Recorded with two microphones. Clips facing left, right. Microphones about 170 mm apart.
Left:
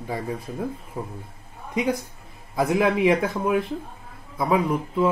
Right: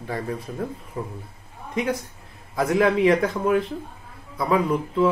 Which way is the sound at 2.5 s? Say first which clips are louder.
Right 1 dB; 15° left (ahead or behind).